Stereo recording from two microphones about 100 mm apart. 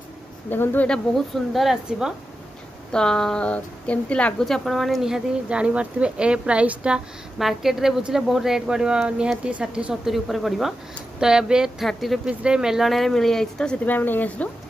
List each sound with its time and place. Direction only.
0.5 s speech: 20° left (ahead or behind)
0.8 s a woman's voice: 5° left (ahead or behind)
2.9 s a woman's voice: 5° left (ahead or behind)
13.8 s speech: 20° left (ahead or behind)